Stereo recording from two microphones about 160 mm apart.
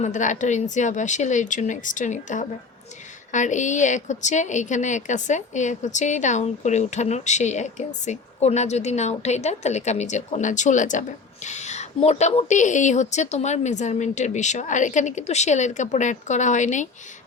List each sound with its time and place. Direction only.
0.0 s a woman's voice: 50° left (ahead or behind)